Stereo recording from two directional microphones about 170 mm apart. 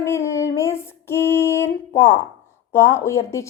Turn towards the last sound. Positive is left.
turn(degrees=15)  # may be behind; listen again after turning